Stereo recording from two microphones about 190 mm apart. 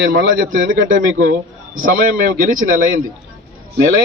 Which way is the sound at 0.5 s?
45° right (ahead or behind).